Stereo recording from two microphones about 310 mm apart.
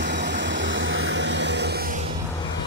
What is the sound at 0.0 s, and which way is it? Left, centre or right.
Vehicle, right.